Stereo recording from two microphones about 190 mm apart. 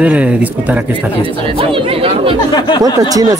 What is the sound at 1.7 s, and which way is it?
Speech, 25° right (ahead or behind).